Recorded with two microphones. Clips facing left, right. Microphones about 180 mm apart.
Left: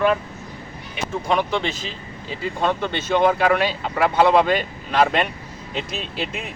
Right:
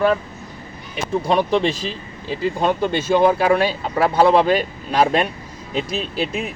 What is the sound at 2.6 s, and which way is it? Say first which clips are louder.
Speech: right 2 dB; 10° right (ahead or behind).